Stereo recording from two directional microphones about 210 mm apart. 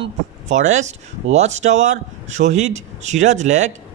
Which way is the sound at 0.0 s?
35° right (ahead or behind).